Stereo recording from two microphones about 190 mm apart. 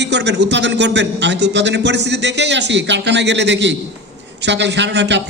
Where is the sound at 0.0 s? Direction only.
65° right (ahead or behind).